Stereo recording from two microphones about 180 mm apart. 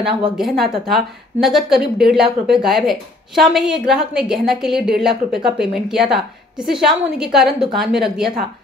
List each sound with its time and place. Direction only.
0.2 s a woman's voice: centre (ahead or behind)